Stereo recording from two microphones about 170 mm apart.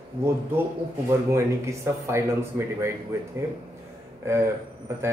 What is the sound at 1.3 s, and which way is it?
A man's voice, 15° right (ahead or behind).